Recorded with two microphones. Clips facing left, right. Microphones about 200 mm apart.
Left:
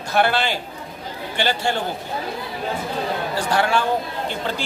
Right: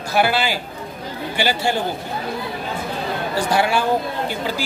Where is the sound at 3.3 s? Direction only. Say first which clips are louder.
Right 2 dB; 10° right (ahead or behind).